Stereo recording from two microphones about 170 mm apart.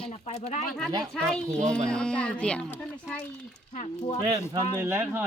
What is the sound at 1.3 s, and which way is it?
Speech, 5° left (ahead or behind).